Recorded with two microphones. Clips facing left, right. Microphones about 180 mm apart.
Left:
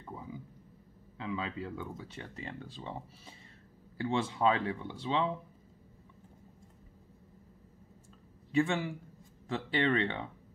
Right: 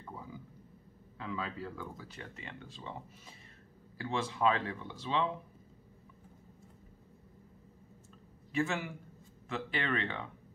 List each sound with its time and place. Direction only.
1.1 s speech: 20° left (ahead or behind)
2.3 s speech: 35° left (ahead or behind)
8.5 s a man's voice: 30° left (ahead or behind)